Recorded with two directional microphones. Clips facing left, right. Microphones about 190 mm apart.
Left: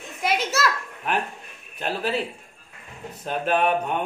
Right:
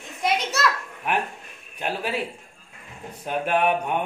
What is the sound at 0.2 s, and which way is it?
Children playing, centre (ahead or behind).